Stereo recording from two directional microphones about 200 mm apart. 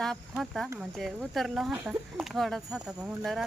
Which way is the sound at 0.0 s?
Centre (ahead or behind).